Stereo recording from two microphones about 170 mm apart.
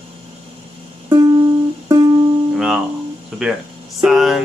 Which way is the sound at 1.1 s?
30° right (ahead or behind).